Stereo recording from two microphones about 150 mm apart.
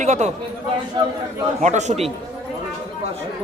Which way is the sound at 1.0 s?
30° right (ahead or behind).